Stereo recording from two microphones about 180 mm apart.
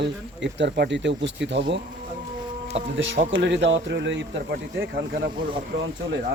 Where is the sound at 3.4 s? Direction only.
80° right.